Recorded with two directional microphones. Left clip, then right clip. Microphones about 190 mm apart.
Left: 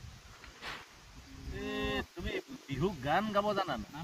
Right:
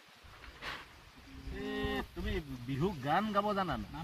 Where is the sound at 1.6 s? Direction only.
30° left (ahead or behind).